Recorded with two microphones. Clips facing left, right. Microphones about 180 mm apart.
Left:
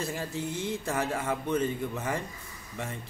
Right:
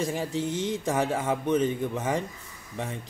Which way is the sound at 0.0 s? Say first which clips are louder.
Right 5 dB; 15° right (ahead or behind).